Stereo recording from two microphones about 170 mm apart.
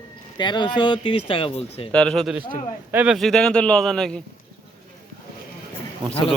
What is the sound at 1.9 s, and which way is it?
Speech, 5° left (ahead or behind).